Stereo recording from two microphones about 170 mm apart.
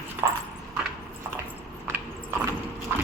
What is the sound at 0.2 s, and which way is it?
Clip-clop, 15° right (ahead or behind).